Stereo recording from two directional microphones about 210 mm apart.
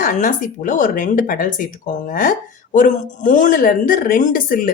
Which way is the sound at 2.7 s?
40° left (ahead or behind).